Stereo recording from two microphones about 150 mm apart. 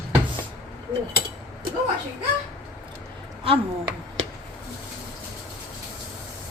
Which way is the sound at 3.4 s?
35° right (ahead or behind).